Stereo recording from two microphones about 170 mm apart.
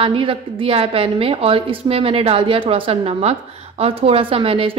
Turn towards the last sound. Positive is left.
turn(degrees=-35)  # may be behind; listen again after turning